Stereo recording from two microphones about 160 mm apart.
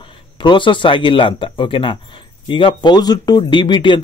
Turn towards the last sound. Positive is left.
turn(degrees=30)  # may be behind; listen again after turning